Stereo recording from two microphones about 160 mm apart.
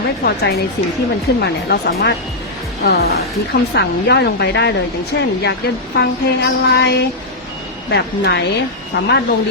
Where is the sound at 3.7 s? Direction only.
90° left.